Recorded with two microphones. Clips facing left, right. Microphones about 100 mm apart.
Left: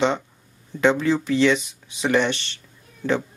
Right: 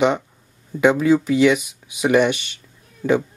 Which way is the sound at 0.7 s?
10° right (ahead or behind).